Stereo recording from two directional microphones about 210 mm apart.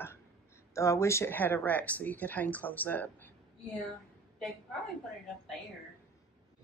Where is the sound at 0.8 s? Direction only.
15° left (ahead or behind).